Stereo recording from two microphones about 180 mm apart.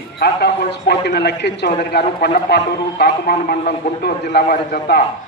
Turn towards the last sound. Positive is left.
turn(degrees=65)  # may be behind; listen again after turning